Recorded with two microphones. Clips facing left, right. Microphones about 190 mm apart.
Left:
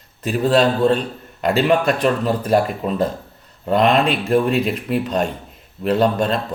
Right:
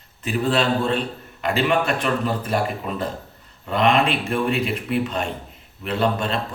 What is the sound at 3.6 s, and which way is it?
Speech, 40° left (ahead or behind).